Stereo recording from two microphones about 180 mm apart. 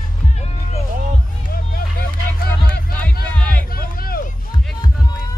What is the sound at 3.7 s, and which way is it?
Music, 55° left (ahead or behind).